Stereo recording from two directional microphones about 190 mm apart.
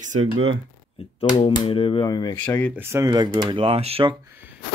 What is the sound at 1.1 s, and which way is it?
Speech, 30° left (ahead or behind).